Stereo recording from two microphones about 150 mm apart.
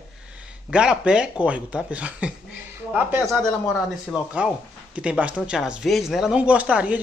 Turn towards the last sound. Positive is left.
turn(degrees=-5)  # may be behind; listen again after turning